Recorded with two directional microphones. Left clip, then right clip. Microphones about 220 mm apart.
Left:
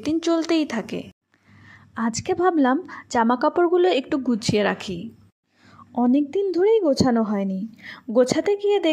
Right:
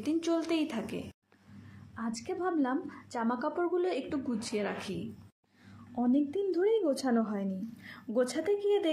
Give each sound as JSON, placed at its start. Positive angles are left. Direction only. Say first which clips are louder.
{"t": 0.0, "sound": "a woman's voice", "louder": "left 9 dB", "side_deg": 35}